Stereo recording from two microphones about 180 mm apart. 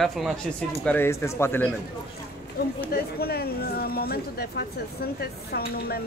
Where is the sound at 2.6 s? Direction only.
60° left (ahead or behind).